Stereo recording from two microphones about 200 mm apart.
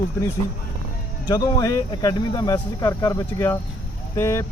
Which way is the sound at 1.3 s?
20° left (ahead or behind).